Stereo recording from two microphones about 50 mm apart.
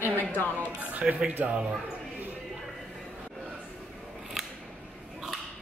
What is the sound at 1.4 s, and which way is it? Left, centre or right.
Speech, right.